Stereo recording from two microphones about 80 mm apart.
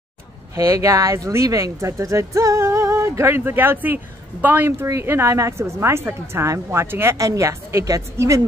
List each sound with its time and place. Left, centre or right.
0.6 s speech: right
7.2 s speech: right